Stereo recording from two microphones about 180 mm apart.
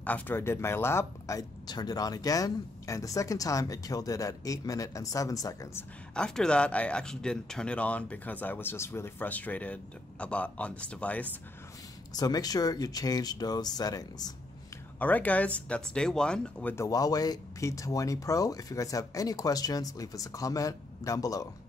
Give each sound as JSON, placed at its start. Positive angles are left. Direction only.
{"t": 0.0, "sound": "speech", "side_deg": 10}
{"t": 6.1, "sound": "speech", "side_deg": 5}
{"t": 12.1, "sound": "speech", "side_deg": 20}
{"t": 15.0, "sound": "speech", "side_deg": 10}